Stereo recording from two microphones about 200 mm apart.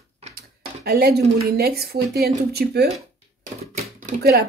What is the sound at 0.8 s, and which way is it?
Speech, 50° right (ahead or behind).